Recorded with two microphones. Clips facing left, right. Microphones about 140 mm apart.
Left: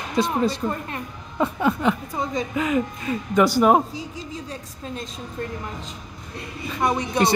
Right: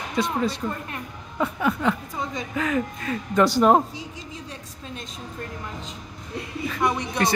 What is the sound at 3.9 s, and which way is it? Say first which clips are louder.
A woman's voice: left 4 dB; 35° left (ahead or behind).